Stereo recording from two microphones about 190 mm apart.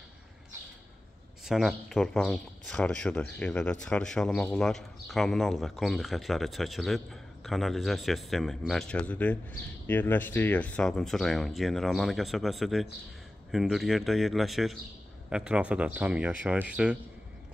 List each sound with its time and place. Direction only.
1.4 s speech: centre (ahead or behind)